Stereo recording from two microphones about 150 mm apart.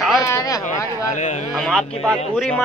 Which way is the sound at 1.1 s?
55° left (ahead or behind).